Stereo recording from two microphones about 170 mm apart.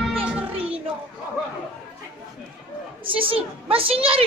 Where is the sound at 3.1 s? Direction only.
30° right (ahead or behind).